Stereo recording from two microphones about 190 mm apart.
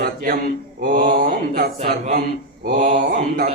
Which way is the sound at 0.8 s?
60° right (ahead or behind).